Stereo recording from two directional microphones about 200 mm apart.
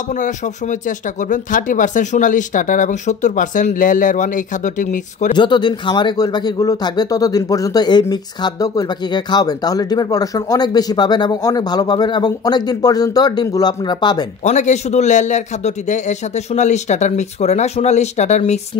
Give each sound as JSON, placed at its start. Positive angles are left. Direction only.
{"t": 0.1, "sound": "speech", "side_deg": 40}
{"t": 5.3, "sound": "speech", "side_deg": 20}
{"t": 14.4, "sound": "speech", "side_deg": 35}